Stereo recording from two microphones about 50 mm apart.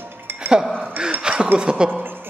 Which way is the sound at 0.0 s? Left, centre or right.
Right.